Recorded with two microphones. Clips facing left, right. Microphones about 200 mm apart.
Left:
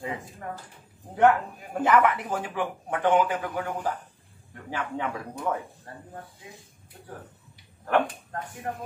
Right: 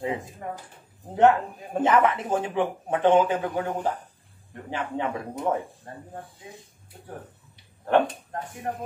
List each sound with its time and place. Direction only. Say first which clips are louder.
0.0 s speech: right 4 dB; 25° right (ahead or behind)
7.8 s speech: right 3 dB; 25° right (ahead or behind)